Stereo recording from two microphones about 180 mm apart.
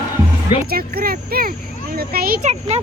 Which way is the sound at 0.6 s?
55° right (ahead or behind).